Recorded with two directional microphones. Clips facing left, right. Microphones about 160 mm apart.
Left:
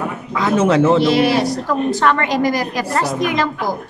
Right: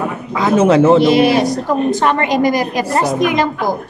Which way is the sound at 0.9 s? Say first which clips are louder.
Right 3 dB; 20° right (ahead or behind).